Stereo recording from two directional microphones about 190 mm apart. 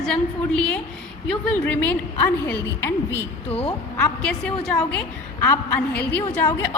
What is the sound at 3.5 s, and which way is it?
Speech, 30° left (ahead or behind).